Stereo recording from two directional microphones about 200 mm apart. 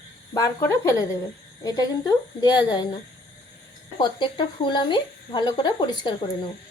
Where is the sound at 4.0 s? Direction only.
20° left (ahead or behind).